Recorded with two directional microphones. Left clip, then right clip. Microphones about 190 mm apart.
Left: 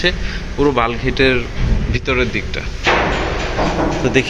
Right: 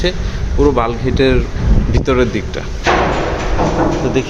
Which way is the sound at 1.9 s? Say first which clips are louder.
Right 3 dB; 25° right (ahead or behind).